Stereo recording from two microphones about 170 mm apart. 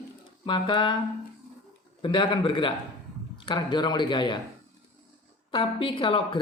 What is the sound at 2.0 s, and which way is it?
Speech, 30° left (ahead or behind).